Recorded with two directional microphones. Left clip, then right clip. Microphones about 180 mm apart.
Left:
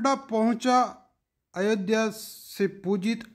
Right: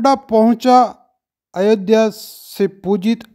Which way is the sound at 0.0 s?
35° right (ahead or behind).